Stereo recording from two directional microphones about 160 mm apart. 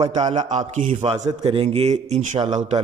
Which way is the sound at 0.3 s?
45° right (ahead or behind).